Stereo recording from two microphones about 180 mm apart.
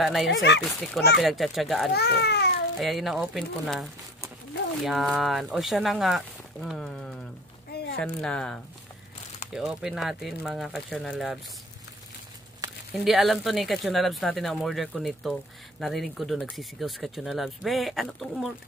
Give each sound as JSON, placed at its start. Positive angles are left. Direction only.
{"t": 0.0, "sound": "speech", "side_deg": 0}
{"t": 0.3, "sound": "speech", "side_deg": 75}
{"t": 1.2, "sound": "speech", "side_deg": 0}
{"t": 2.0, "sound": "a child's voice", "side_deg": 65}
{"t": 2.8, "sound": "speech", "side_deg": 0}
{"t": 7.7, "sound": "a sound", "side_deg": 65}
{"t": 8.0, "sound": "speech", "side_deg": 5}
{"t": 12.9, "sound": "speech", "side_deg": 0}